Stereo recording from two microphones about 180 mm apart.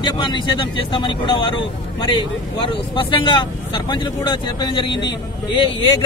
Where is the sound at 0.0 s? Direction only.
25° left (ahead or behind).